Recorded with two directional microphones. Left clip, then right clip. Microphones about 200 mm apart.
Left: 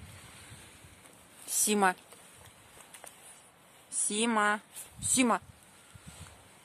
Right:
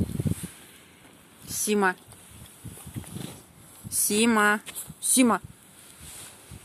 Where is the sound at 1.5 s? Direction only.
20° left (ahead or behind).